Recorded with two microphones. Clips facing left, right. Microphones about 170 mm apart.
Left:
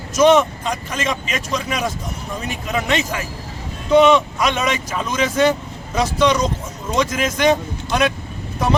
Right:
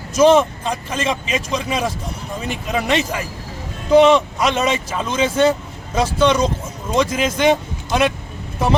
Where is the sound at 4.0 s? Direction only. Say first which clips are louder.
Right 1 dB; 30° right (ahead or behind).